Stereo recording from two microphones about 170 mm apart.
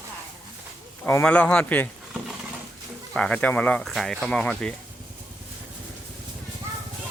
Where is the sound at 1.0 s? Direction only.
10° left (ahead or behind).